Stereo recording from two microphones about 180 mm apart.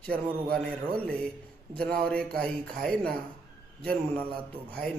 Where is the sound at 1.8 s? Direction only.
5° left (ahead or behind).